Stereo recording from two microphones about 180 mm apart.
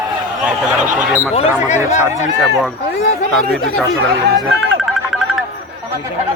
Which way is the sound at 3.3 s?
Centre (ahead or behind).